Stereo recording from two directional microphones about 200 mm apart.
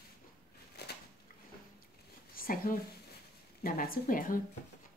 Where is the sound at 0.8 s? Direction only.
55° left (ahead or behind).